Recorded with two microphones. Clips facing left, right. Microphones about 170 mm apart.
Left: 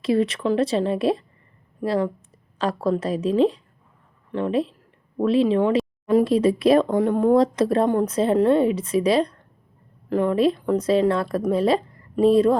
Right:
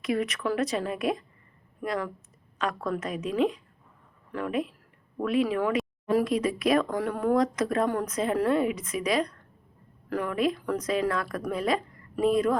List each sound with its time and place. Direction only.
0.0 s a woman's voice: 30° left (ahead or behind)